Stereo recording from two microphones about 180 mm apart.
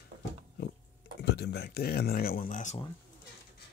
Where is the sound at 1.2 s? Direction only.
65° left (ahead or behind); by 2.7 s 45° left (ahead or behind).